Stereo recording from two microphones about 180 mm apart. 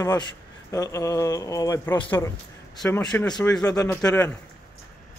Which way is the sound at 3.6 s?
20° left (ahead or behind).